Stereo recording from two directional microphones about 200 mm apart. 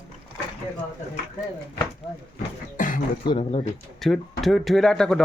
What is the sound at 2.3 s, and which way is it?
Beatboxing, 40° left (ahead or behind).